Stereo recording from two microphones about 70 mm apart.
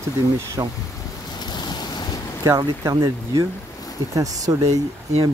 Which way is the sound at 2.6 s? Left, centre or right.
Right.